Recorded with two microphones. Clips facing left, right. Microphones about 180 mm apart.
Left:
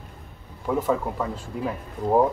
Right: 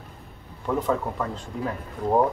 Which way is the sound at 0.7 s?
5° left (ahead or behind).